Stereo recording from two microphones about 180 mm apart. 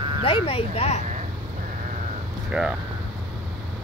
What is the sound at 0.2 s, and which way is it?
Speech, 30° left (ahead or behind).